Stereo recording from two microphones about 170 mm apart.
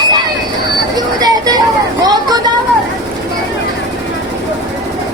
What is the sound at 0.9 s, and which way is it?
Vehicle, 20° right (ahead or behind).